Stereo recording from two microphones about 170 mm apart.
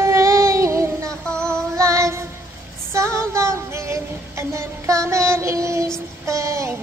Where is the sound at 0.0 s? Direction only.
15° right (ahead or behind).